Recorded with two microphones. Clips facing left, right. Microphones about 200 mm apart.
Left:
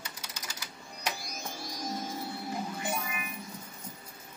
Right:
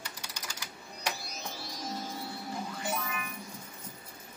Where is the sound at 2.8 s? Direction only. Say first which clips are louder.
Even; 15° left (ahead or behind).